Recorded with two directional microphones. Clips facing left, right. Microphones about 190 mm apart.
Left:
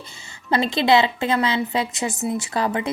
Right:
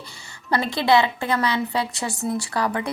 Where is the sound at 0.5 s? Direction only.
20° left (ahead or behind).